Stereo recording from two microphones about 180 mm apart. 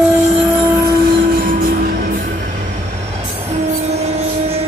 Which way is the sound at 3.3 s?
35° right (ahead or behind).